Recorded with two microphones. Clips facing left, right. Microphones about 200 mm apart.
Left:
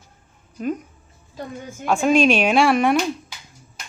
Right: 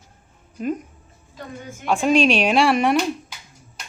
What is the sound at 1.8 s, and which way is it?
Speech, centre (ahead or behind).